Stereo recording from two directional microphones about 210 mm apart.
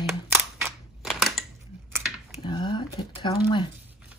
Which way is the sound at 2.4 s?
20° left (ahead or behind).